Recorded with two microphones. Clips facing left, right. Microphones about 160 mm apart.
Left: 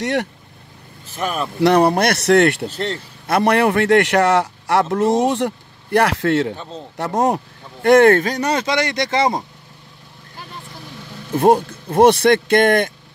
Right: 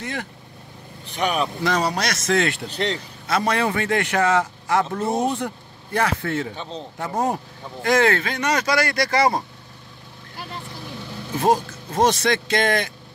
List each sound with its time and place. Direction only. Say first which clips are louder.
0.0 s a man's voice: left 10 dB; 70° left (ahead or behind)
1.0 s speech: right 1 dB; centre (ahead or behind)
1.6 s a man's voice: left 14 dB; 60° left (ahead or behind)
6.5 s speech: left 1 dB; 5° left (ahead or behind)
7.0 s a man's voice: left 6 dB; 75° left (ahead or behind)
7.8 s speech: left 8 dB; 60° left (ahead or behind); by 9.4 s 20° left (ahead or behind)
11.3 s speech: left 6 dB; 55° left (ahead or behind)